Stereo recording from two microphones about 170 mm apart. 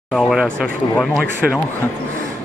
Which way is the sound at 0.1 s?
Centre (ahead or behind).